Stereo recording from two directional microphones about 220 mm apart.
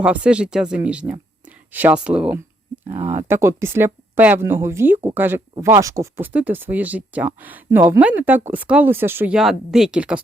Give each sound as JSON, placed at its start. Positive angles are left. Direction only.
{"t": 0.0, "sound": "speech", "side_deg": -5}
{"t": 2.8, "sound": "speech", "side_deg": -30}
{"t": 3.2, "sound": "speech", "side_deg": -10}